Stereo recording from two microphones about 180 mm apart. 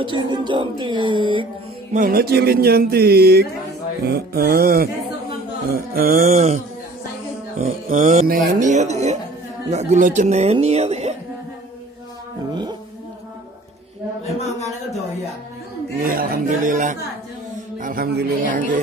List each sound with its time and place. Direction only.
0.0 s speech: 25° right (ahead or behind)
2.0 s speech: 55° right (ahead or behind)
6.3 s speech: 35° right (ahead or behind)
16.0 s speech: 55° right (ahead or behind)